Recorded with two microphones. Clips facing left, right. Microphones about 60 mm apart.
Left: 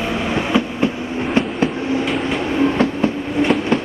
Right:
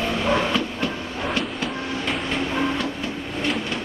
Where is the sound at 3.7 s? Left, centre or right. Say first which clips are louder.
Left 10 dB; left.